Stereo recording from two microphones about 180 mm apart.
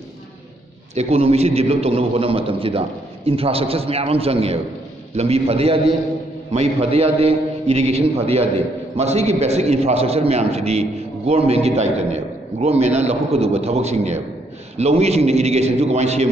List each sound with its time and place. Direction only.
0.9 s a man's voice: 35° right (ahead or behind)